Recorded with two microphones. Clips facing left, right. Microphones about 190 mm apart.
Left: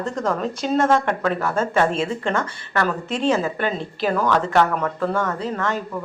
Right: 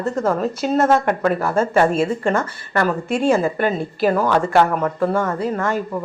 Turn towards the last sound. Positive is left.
turn(degrees=-10)  # may be behind; listen again after turning